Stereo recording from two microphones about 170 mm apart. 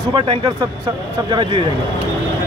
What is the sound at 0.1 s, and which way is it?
A man's voice, 30° right (ahead or behind).